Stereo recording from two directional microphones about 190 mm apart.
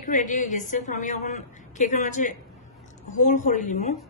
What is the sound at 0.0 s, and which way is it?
A woman's voice, 40° left (ahead or behind).